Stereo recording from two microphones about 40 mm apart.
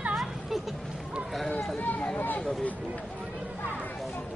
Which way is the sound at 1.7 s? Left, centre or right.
Left.